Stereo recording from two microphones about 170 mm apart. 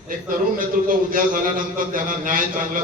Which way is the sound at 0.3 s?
55° right (ahead or behind).